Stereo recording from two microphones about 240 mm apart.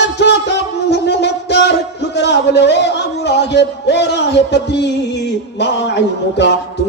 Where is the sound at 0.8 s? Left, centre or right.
Left.